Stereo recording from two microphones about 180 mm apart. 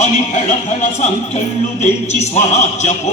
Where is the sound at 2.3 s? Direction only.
40° left (ahead or behind).